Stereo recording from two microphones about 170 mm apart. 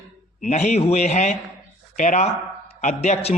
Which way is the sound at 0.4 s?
40° left (ahead or behind).